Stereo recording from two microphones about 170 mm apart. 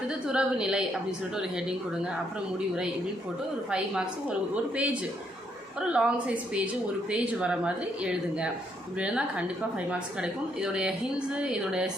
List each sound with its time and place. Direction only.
0.1 s a woman's voice: 5° right (ahead or behind)
3.7 s a woman's voice: 5° right (ahead or behind)